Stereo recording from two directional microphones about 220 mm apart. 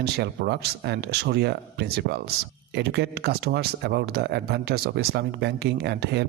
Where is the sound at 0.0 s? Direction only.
45° right (ahead or behind).